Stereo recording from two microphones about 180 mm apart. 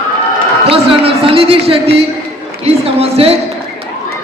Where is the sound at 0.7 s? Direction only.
30° right (ahead or behind).